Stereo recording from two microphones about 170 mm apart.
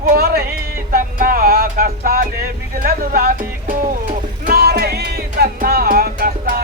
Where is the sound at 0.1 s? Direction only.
65° right (ahead or behind).